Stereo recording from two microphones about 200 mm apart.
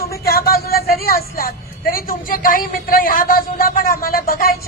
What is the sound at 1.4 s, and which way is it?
Speech, 45° left (ahead or behind).